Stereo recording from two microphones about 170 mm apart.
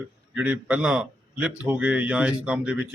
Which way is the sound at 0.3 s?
10° right (ahead or behind).